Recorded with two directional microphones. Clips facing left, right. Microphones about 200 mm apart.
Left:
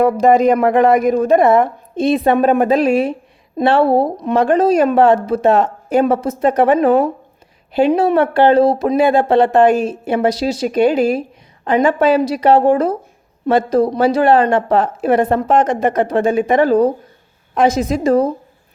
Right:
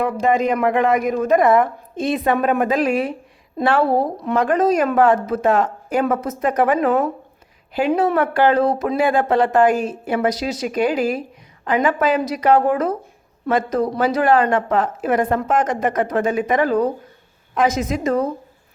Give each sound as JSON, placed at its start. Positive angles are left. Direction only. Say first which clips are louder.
{"t": 0.0, "sound": "a woman's voice", "louder": "left 7 dB", "side_deg": 40}